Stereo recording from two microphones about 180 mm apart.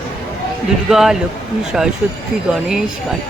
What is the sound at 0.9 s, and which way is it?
Speech, centre (ahead or behind).